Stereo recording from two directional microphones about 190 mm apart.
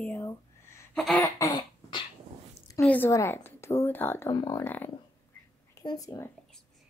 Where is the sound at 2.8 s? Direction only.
10° left (ahead or behind).